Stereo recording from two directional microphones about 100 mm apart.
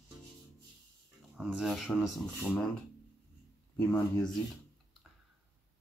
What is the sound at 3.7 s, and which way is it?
Speech, 20° left (ahead or behind).